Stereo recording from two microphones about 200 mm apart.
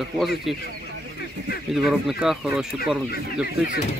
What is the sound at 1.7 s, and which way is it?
Speech, centre (ahead or behind).